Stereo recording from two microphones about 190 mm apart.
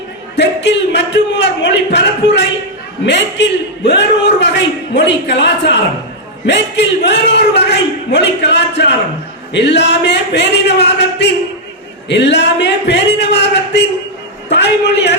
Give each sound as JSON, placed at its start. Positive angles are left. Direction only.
{"t": 0.3, "sound": "a man's voice", "side_deg": 65}